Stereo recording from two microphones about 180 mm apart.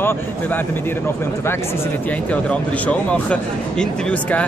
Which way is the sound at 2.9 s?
5° left (ahead or behind).